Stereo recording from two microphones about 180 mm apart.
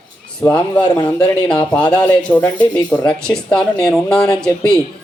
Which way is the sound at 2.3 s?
10° left (ahead or behind).